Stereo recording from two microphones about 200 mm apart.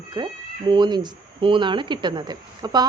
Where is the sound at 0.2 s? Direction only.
20° right (ahead or behind).